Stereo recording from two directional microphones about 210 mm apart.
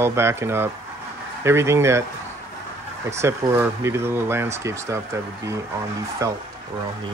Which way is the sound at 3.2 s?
10° right (ahead or behind).